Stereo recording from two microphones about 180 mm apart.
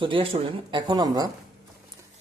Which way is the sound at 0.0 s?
30° right (ahead or behind).